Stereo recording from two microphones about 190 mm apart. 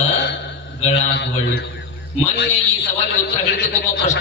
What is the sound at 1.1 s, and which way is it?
Speech, 65° left (ahead or behind).